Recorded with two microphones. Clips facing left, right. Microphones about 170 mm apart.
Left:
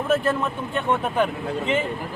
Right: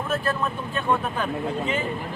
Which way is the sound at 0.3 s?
20° left (ahead or behind).